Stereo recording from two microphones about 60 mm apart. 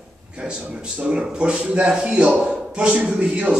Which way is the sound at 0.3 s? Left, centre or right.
Centre.